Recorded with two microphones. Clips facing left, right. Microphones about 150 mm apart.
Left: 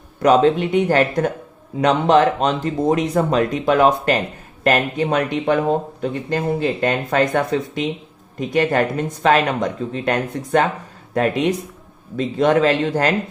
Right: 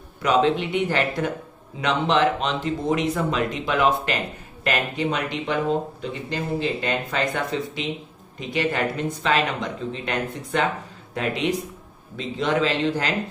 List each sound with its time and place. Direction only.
0.2 s speech: 45° left (ahead or behind)